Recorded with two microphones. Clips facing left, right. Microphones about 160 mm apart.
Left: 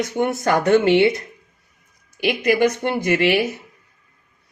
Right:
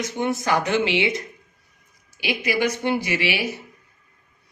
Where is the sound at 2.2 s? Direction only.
50° left (ahead or behind).